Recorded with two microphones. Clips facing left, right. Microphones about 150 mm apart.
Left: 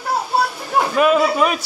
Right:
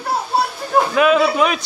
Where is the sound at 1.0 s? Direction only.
5° left (ahead or behind).